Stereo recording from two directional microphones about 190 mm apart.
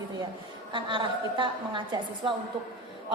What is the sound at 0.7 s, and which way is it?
A woman's voice, 25° right (ahead or behind).